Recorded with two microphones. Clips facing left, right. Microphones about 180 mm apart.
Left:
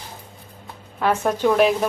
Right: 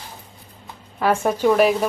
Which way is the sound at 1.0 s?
10° right (ahead or behind).